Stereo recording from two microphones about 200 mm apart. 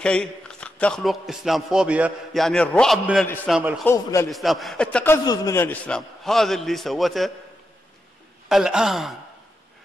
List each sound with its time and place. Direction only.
0.0 s speech: 5° left (ahead or behind)
3.8 s a man's voice: 15° left (ahead or behind)
4.3 s speech: centre (ahead or behind)
8.5 s speech: 5° right (ahead or behind)